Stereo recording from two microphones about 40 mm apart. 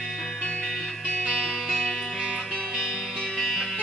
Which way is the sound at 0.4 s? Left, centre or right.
Left.